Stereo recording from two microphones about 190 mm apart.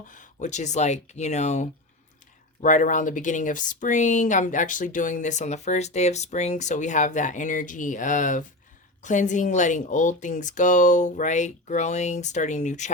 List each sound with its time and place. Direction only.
0.1 s speech: 40° left (ahead or behind)